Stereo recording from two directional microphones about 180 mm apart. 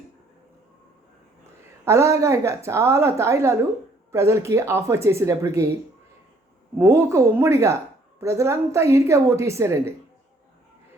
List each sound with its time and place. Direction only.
1.8 s a woman's voice: 15° right (ahead or behind)
6.7 s a woman's voice: 15° right (ahead or behind)